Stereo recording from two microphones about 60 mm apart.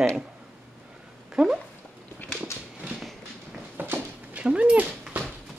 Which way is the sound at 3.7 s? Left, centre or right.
Right.